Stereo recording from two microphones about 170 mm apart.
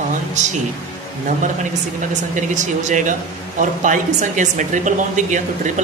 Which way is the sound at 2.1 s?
45° right (ahead or behind).